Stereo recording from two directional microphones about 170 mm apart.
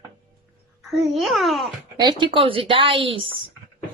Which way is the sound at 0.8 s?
Centre (ahead or behind).